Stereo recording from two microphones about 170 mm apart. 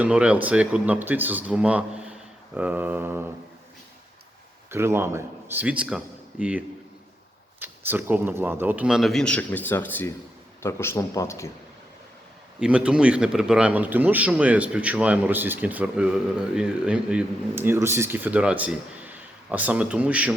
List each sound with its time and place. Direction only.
0.0 s speech: 5° right (ahead or behind)
4.7 s a man's voice: 15° right (ahead or behind); by 11.5 s 15° left (ahead or behind)
12.5 s speech: 5° right (ahead or behind)